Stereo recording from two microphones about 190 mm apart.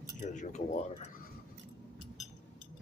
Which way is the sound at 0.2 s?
40° left (ahead or behind).